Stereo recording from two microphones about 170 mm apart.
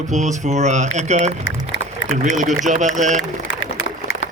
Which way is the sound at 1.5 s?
90° left.